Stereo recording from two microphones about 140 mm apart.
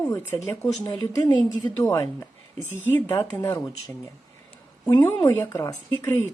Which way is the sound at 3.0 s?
15° left (ahead or behind).